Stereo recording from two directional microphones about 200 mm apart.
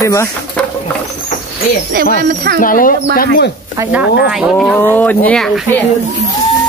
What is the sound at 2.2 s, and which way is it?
Speech, 45° right (ahead or behind).